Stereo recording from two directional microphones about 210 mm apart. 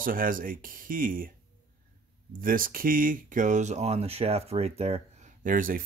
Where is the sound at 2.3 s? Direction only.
40° right (ahead or behind).